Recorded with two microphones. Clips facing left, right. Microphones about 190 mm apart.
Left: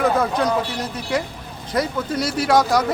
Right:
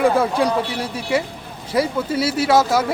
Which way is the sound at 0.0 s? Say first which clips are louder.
Right 2 dB; 10° right (ahead or behind).